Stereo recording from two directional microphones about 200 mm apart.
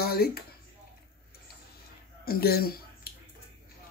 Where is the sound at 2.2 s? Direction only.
50° left (ahead or behind).